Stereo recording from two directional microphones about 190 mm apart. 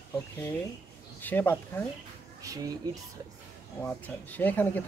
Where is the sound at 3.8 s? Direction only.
10° left (ahead or behind).